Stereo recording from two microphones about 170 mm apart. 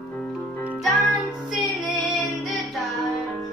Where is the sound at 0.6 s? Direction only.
5° right (ahead or behind).